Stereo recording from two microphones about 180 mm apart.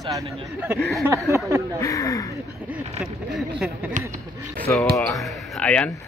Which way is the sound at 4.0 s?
45° right (ahead or behind).